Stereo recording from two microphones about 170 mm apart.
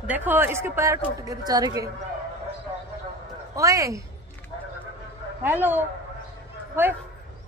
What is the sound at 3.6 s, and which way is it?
Speech, 20° right (ahead or behind).